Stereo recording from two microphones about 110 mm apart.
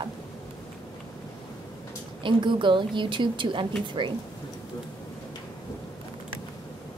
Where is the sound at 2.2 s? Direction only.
45° right (ahead or behind).